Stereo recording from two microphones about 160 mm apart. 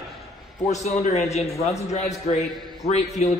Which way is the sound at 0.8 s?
40° left (ahead or behind).